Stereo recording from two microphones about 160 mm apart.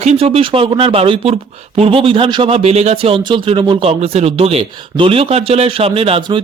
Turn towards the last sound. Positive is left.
turn(degrees=-35)  # may be behind; listen again after turning